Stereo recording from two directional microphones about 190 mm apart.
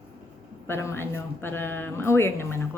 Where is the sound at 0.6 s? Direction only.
10° left (ahead or behind).